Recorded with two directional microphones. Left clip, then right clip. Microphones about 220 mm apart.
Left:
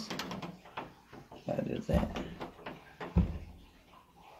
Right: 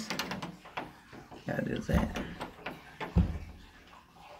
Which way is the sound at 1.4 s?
5° right (ahead or behind).